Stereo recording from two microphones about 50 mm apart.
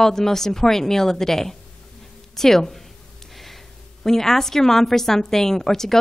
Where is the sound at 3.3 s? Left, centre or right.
Centre.